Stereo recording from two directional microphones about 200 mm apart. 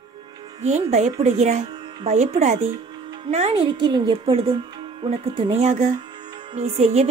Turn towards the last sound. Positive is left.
turn(degrees=-30)  # may be behind; listen again after turning